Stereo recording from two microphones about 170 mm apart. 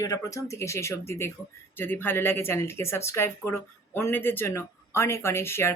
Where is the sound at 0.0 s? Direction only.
20° left (ahead or behind).